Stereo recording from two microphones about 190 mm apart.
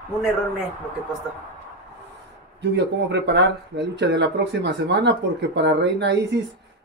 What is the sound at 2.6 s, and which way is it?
Speech, 65° right (ahead or behind).